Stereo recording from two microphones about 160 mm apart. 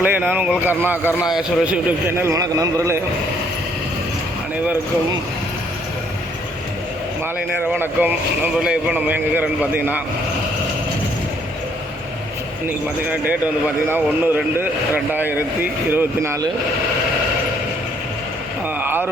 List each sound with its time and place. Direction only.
0.0 s speech: 10° right (ahead or behind)
7.7 s speech: 10° right (ahead or behind)
12.6 s speech: 10° right (ahead or behind)
18.8 s speech: 10° right (ahead or behind)